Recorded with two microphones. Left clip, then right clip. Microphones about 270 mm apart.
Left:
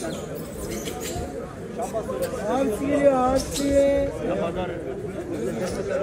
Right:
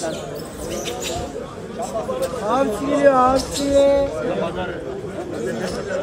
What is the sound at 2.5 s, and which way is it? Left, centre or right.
Speech, right.